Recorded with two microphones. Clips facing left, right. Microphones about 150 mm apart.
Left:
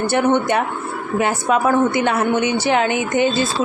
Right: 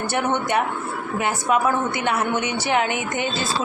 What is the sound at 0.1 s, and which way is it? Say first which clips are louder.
A woman's voice: left 5 dB; 30° left (ahead or behind).